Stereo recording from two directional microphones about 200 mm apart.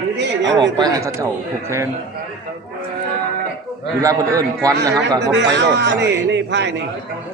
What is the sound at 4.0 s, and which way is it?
A man's voice, 15° right (ahead or behind).